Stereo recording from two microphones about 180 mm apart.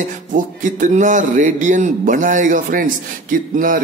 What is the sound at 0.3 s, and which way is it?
Speech, 45° right (ahead or behind).